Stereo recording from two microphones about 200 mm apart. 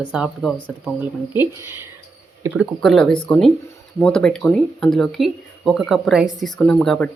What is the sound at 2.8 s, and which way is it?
Speech, 5° left (ahead or behind).